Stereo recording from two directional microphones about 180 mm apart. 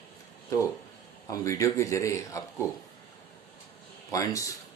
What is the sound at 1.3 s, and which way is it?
Speech, 20° left (ahead or behind).